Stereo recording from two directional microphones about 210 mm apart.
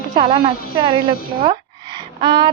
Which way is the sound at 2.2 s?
20° right (ahead or behind).